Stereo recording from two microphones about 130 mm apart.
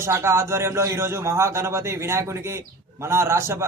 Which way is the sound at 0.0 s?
20° right (ahead or behind).